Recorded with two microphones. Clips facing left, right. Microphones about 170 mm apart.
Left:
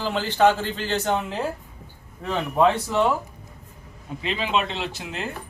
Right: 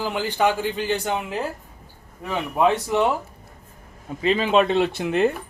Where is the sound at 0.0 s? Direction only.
15° right (ahead or behind).